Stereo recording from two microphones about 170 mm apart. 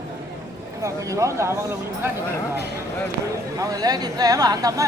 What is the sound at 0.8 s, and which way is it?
Speech, 20° right (ahead or behind).